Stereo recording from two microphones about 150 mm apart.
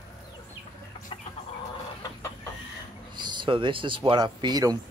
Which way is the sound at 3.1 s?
30° right (ahead or behind).